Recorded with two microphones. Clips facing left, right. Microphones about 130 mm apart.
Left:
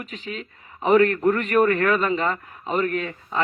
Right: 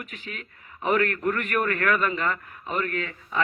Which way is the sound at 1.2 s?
30° left (ahead or behind).